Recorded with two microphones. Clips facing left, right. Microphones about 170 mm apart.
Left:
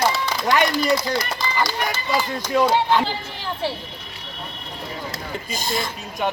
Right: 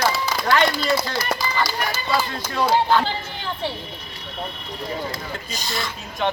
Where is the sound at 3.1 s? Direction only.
Centre (ahead or behind).